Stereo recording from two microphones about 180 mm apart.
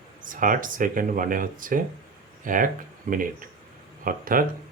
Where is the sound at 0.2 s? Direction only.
50° right (ahead or behind).